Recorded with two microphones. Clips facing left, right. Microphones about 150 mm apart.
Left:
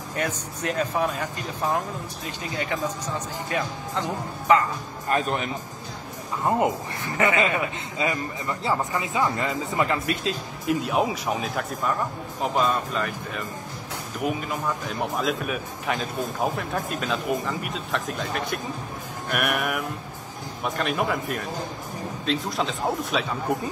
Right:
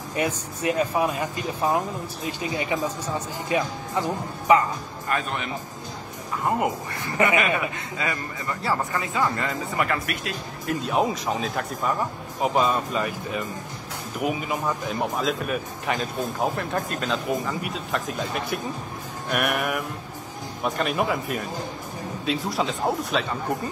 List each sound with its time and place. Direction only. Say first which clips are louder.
0.1 s speech: right 3 dB; 10° right (ahead or behind)
5.1 s speech: left 3 dB; 40° left (ahead or behind)
7.2 s speech: right 1 dB; 15° right (ahead or behind)
7.4 s speech: even; 20° left (ahead or behind)
10.8 s speech: right 4 dB; 5° left (ahead or behind)